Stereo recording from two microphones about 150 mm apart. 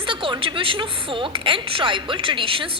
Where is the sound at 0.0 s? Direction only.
35° right (ahead or behind).